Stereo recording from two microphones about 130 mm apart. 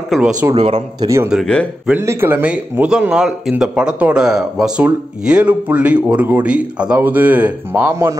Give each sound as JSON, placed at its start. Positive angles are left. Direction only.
{"t": 0.6, "sound": "speech", "side_deg": -50}
{"t": 1.0, "sound": "speech", "side_deg": -25}
{"t": 1.3, "sound": "speech", "side_deg": 5}
{"t": 1.9, "sound": "speech", "side_deg": -20}